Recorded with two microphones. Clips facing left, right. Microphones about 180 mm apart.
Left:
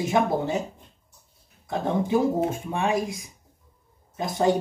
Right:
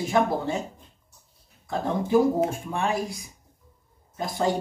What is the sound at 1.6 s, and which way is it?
Speech, 20° left (ahead or behind).